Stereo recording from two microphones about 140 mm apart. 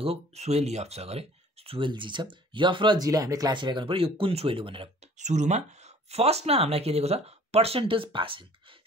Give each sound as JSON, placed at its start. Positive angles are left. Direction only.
{"t": 0.0, "sound": "speech", "side_deg": -45}
{"t": 5.1, "sound": "speech", "side_deg": -55}